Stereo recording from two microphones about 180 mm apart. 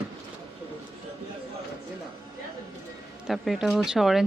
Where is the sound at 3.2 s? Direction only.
Centre (ahead or behind).